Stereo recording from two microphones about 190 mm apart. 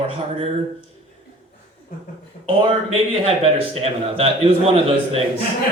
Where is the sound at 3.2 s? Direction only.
30° right (ahead or behind).